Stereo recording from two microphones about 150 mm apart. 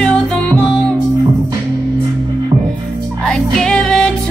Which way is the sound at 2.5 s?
30° right (ahead or behind).